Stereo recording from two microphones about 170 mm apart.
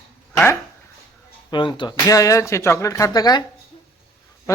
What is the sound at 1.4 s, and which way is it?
Speech, 30° left (ahead or behind).